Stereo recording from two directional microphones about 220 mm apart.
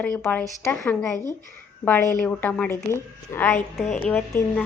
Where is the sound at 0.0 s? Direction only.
10° left (ahead or behind).